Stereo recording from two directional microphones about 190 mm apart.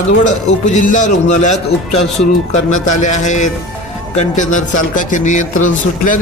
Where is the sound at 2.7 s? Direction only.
40° left (ahead or behind).